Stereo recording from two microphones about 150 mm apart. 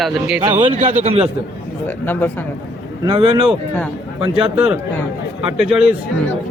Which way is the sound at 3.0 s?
30° right (ahead or behind).